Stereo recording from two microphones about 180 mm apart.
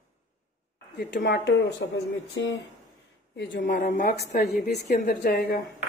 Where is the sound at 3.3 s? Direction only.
65° left (ahead or behind).